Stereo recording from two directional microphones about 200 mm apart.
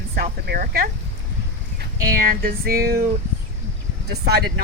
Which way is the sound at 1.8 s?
45° right (ahead or behind).